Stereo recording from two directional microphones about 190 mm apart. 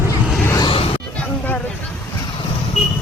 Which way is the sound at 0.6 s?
30° left (ahead or behind).